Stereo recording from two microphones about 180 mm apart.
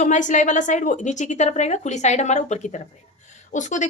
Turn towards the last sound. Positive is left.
turn(degrees=45)  # may be behind; listen again after turning